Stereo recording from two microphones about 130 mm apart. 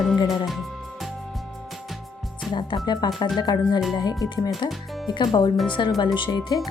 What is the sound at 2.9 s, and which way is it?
A woman's voice, 30° left (ahead or behind).